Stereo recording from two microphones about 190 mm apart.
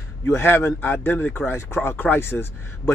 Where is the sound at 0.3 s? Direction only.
10° left (ahead or behind).